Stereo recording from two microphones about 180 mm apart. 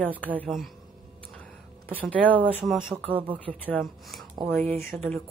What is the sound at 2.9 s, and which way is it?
Speech, 30° right (ahead or behind).